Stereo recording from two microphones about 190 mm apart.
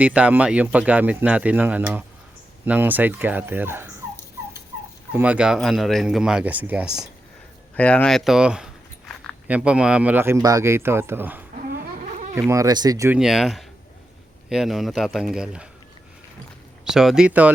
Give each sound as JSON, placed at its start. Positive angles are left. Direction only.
{"t": 0.0, "sound": "speech", "side_deg": -5}
{"t": 5.1, "sound": "speech", "side_deg": -5}
{"t": 7.8, "sound": "speech", "side_deg": 5}
{"t": 11.7, "sound": "a sound", "side_deg": -40}
{"t": 12.3, "sound": "speech", "side_deg": -15}
{"t": 13.1, "sound": "speech", "side_deg": 0}
{"t": 16.8, "sound": "speech", "side_deg": 0}